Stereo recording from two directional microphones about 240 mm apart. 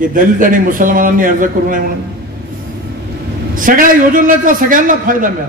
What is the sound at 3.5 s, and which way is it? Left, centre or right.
A woman's voice, right.